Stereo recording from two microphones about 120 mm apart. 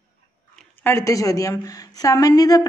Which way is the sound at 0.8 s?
25° left (ahead or behind).